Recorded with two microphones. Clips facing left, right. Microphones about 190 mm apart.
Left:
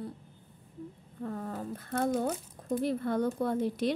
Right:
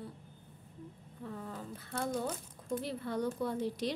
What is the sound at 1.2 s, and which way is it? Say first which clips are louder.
A woman's voice: left 7 dB; 50° left (ahead or behind).